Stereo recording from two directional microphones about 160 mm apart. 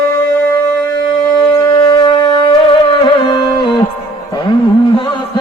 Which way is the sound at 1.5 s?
25° left (ahead or behind).